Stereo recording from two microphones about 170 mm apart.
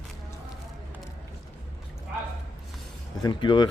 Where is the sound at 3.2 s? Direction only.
25° left (ahead or behind).